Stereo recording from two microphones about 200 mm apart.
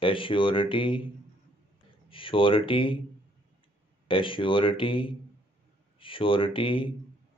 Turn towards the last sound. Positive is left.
turn(degrees=25)  # may be behind; listen again after turning